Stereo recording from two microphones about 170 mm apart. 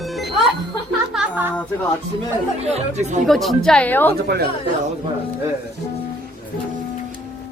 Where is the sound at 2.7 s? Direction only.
45° right (ahead or behind).